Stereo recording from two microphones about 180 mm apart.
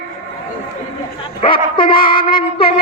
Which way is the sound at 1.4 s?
30° left (ahead or behind).